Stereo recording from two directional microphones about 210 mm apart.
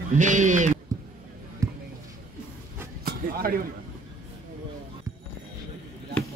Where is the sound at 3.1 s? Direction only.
45° right (ahead or behind).